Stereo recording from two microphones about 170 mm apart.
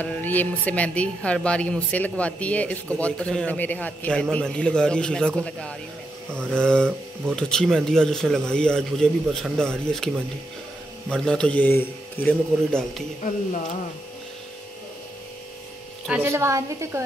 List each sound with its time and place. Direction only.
0.0 s a man's voice: 10° left (ahead or behind)
16.1 s a woman's voice: 10° right (ahead or behind)